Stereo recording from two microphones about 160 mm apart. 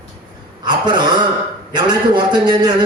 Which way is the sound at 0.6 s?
25° right (ahead or behind).